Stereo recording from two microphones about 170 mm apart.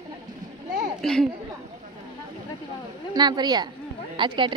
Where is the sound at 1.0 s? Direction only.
5° left (ahead or behind).